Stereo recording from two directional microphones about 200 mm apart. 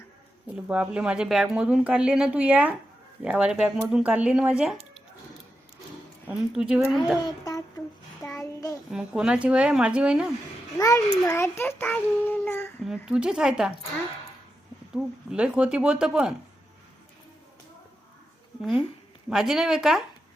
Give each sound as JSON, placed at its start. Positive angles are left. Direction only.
{"t": 0.5, "sound": "speech", "side_deg": -5}
{"t": 6.5, "sound": "speech", "side_deg": -5}
{"t": 7.2, "sound": "speech", "side_deg": 20}
{"t": 8.2, "sound": "child singing", "side_deg": 10}
{"t": 8.9, "sound": "speech", "side_deg": -5}
{"t": 10.8, "sound": "a child's voice", "side_deg": 15}
{"t": 12.8, "sound": "speech", "side_deg": -5}
{"t": 14.9, "sound": "speech", "side_deg": -5}
{"t": 19.3, "sound": "speech", "side_deg": 0}